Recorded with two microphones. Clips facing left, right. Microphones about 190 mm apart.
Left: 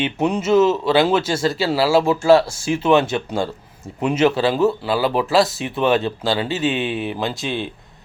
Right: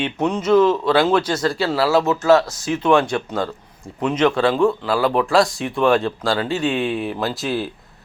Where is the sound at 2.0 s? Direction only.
30° left (ahead or behind).